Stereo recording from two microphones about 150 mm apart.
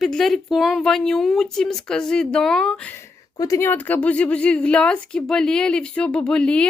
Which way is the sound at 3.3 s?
25° left (ahead or behind).